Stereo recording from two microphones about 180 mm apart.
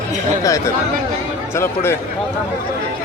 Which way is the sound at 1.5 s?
15° left (ahead or behind).